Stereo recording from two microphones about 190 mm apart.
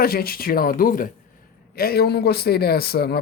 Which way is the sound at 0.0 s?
55° left (ahead or behind).